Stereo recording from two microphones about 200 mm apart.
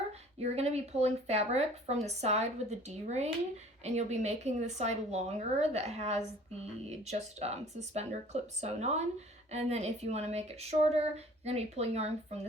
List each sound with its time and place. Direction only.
0.1 s speech: 30° right (ahead or behind)